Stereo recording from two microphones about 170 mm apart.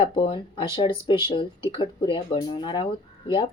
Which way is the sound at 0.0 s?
30° left (ahead or behind).